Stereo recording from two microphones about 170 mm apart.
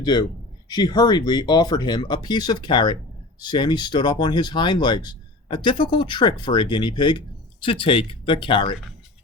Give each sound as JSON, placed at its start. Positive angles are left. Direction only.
{"t": 0.0, "sound": "speech", "side_deg": 25}